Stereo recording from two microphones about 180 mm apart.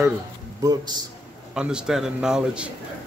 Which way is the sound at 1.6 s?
5° right (ahead or behind).